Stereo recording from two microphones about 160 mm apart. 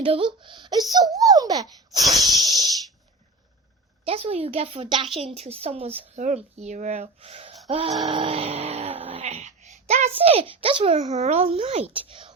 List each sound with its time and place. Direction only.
0.0 s a woman's voice: 35° right (ahead or behind)
2.2 s wheeze: 25° right (ahead or behind)
4.0 s a woman's voice: 40° right (ahead or behind)
8.0 s a sound: 35° right (ahead or behind)
11.1 s a woman's voice: 45° right (ahead or behind)